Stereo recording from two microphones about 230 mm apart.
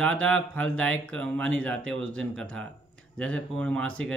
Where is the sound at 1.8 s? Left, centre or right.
Right.